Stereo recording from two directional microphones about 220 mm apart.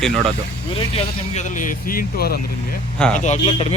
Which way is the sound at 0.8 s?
30° left (ahead or behind).